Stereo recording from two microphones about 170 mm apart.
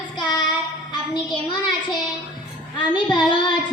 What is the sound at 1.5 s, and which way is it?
Child singing, 25° left (ahead or behind).